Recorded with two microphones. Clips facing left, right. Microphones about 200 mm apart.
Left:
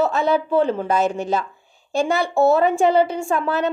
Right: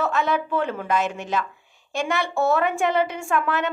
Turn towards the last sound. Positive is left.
turn(degrees=30)  # may be behind; listen again after turning